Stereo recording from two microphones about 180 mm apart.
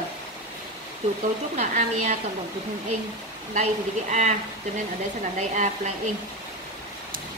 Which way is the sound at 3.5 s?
40° right (ahead or behind).